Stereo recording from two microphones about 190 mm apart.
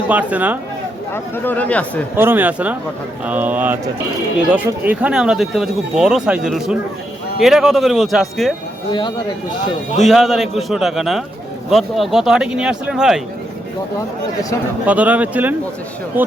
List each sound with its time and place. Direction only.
0.1 s speech: 10° right (ahead or behind)
1.1 s speech: 10° left (ahead or behind)
2.1 s speech: 10° right (ahead or behind)
8.9 s speech: 25° left (ahead or behind)
10.0 s speech: centre (ahead or behind)
14.8 s speech: 10° right (ahead or behind)